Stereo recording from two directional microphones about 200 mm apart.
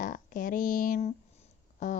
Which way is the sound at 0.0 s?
40° left (ahead or behind).